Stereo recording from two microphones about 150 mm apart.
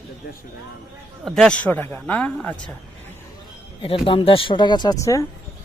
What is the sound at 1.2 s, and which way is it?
Speech, 5° left (ahead or behind).